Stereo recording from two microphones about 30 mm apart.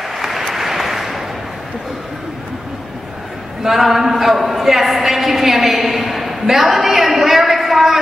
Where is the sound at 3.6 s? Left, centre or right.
Centre.